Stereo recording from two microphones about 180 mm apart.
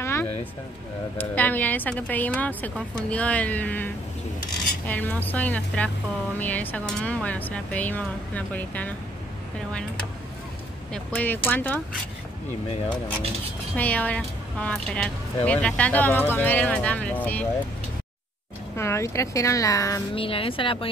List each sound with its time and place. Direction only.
0.0 s a sound: 15° left (ahead or behind)
1.1 s speech: 10° left (ahead or behind)
10.9 s speech: 10° left (ahead or behind)
13.7 s speech: 10° left (ahead or behind)
18.8 s speech: 15° left (ahead or behind)
20.2 s speech: 30° left (ahead or behind)